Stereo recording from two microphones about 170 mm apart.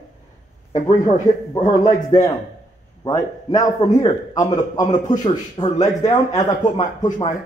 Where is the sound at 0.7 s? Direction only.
45° left (ahead or behind).